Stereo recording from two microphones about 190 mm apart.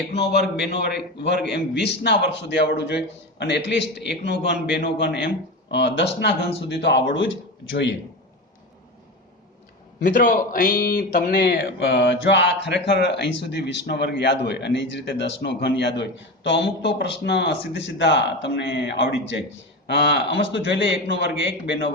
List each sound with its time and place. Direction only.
0.1 s a man's voice: 60° left (ahead or behind); by 7.9 s 80° left
10.0 s a man's voice: 45° left (ahead or behind); by 21.9 s 65° left (ahead or behind)